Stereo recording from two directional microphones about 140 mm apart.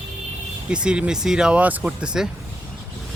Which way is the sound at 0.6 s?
5° right (ahead or behind).